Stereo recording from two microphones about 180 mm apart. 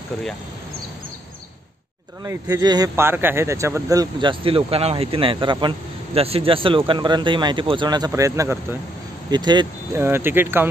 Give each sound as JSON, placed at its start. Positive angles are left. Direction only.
{"t": 2.2, "sound": "speech", "side_deg": -15}
{"t": 10.0, "sound": "speech", "side_deg": -10}